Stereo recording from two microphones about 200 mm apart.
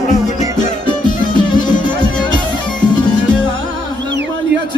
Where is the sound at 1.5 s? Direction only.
20° left (ahead or behind).